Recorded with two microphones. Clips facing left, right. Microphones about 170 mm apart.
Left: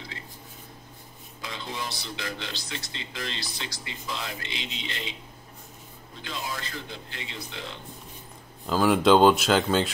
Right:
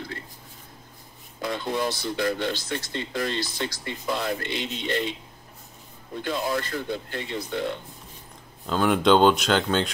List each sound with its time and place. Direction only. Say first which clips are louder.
1.4 s speech: right 9 dB; 55° right (ahead or behind)
6.2 s speech: right 8 dB; 55° right (ahead or behind)
8.6 s speech: even; 5° left (ahead or behind)